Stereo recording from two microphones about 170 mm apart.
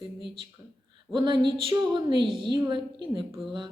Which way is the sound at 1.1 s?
25° right (ahead or behind).